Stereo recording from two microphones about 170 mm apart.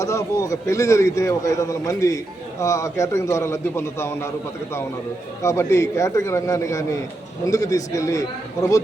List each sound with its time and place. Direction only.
0.0 s a man's voice: 20° left (ahead or behind)
5.4 s a man's voice: 15° left (ahead or behind)